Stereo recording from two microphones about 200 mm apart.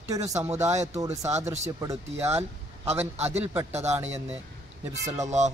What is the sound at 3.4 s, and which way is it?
Speech, 10° right (ahead or behind).